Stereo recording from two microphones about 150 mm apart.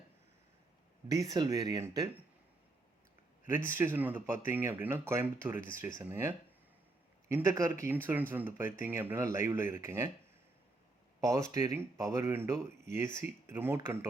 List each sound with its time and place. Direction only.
1.0 s speech: 25° right (ahead or behind)
3.5 s speech: 15° right (ahead or behind)
11.2 s speech: 20° right (ahead or behind)